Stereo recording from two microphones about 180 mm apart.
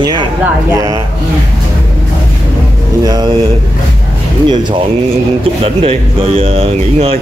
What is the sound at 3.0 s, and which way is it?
Speech, 25° right (ahead or behind).